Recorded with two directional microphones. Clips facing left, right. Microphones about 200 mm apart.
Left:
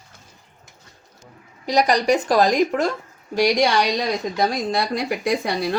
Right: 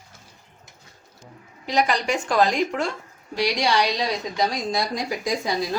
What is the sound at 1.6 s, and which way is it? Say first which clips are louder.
A woman's voice: left 4 dB; 40° left (ahead or behind).